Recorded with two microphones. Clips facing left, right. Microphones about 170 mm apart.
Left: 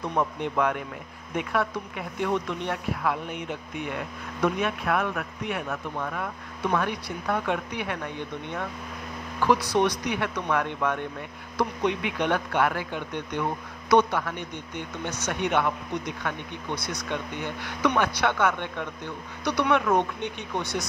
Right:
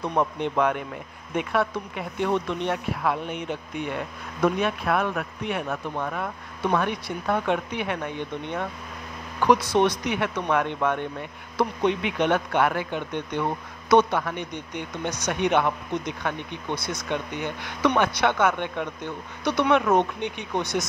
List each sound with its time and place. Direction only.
0.1 s speech: 25° right (ahead or behind)
4.4 s speech: 30° right (ahead or behind)
9.4 s speech: 20° right (ahead or behind)